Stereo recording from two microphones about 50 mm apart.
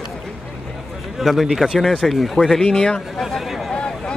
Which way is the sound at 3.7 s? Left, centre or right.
Centre.